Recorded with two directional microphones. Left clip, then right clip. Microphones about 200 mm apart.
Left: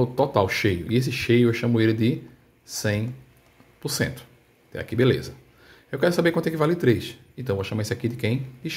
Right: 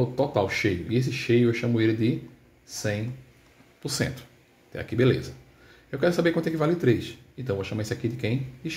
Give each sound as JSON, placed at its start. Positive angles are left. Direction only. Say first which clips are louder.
{"t": 0.0, "sound": "speech", "louder": "left 3 dB", "side_deg": 30}